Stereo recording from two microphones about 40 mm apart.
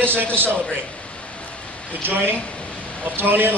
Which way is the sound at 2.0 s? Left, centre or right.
Right.